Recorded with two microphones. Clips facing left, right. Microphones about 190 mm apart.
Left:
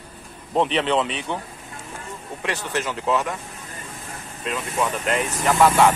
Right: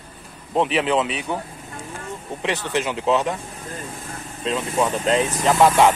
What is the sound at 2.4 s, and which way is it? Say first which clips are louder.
Speech: right 3 dB; 20° right (ahead or behind).